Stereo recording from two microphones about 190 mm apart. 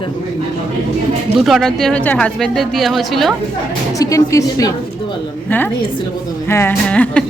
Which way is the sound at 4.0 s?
15° left (ahead or behind).